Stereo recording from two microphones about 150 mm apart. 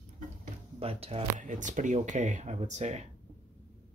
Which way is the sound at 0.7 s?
40° right (ahead or behind).